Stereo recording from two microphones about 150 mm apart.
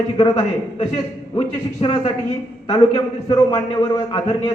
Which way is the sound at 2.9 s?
25° left (ahead or behind).